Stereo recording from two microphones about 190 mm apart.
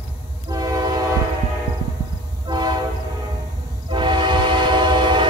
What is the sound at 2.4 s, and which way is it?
Train, 25° right (ahead or behind).